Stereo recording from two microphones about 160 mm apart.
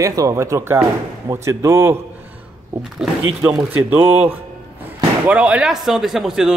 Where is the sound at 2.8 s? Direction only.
5° right (ahead or behind).